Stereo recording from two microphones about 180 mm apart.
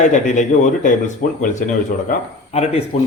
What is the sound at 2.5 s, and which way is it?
Speech, 35° left (ahead or behind).